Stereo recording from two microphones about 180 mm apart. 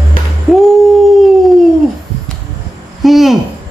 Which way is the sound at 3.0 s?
Centre (ahead or behind).